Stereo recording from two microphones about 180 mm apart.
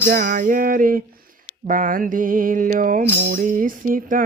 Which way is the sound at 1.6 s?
50° right (ahead or behind).